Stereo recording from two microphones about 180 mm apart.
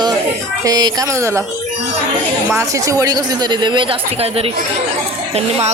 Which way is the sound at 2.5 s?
15° right (ahead or behind).